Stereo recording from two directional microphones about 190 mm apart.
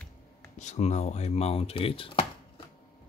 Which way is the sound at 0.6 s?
35° left (ahead or behind).